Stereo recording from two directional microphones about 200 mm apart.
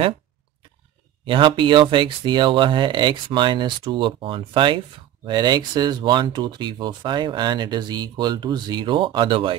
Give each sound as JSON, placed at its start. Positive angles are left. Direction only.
{"t": 1.2, "sound": "speech", "side_deg": -25}